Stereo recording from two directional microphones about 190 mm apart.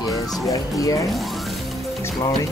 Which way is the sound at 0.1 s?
Centre (ahead or behind).